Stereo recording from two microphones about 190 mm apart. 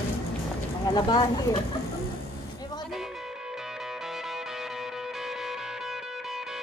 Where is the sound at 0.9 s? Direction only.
20° left (ahead or behind).